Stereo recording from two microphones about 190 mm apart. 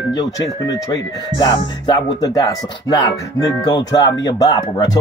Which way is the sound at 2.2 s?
20° left (ahead or behind).